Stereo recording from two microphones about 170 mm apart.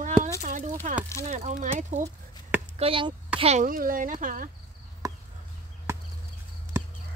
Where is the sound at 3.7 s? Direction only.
55° right (ahead or behind).